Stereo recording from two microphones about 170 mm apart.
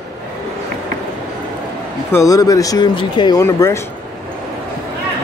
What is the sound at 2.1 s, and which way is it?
Speech, 20° left (ahead or behind).